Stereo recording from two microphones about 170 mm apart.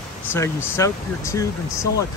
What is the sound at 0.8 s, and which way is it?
Speech, 20° left (ahead or behind).